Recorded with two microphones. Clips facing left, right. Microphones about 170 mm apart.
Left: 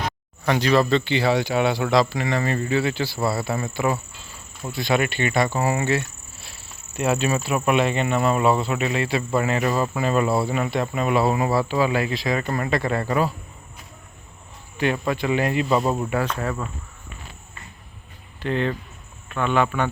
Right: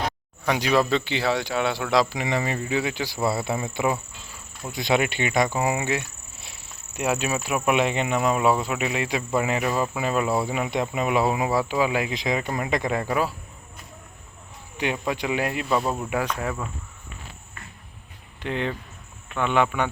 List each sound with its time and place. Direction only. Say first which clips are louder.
0.4 s speech: left 2 dB; 5° right (ahead or behind)
4.7 s cricket: left 1 dB; 20° right (ahead or behind)
7.1 s speech: left 3 dB; 5° right (ahead or behind)
14.8 s speech: left 3 dB; 10° right (ahead or behind)
16.0 s speech: left 2 dB; 10° right (ahead or behind)
18.3 s speech: left 4 dB; 15° right (ahead or behind)